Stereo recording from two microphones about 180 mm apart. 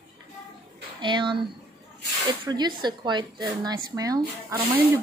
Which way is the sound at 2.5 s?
25° right (ahead or behind).